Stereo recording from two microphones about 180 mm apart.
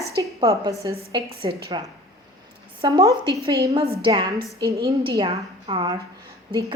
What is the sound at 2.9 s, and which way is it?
A woman's voice, 20° right (ahead or behind).